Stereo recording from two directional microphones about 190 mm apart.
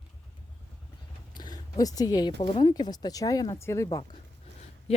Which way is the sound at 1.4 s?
20° left (ahead or behind).